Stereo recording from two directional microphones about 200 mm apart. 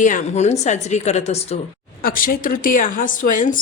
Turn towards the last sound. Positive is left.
turn(degrees=40)  # may be behind; listen again after turning